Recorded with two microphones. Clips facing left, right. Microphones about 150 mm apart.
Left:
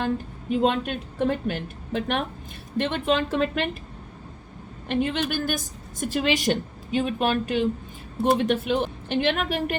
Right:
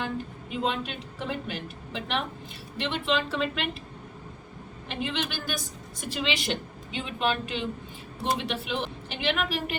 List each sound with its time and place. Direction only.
0.5 s a woman's voice: 50° left (ahead or behind)
4.9 s a woman's voice: 45° left (ahead or behind)